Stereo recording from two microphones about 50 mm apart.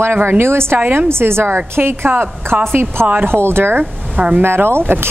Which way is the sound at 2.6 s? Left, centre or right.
Right.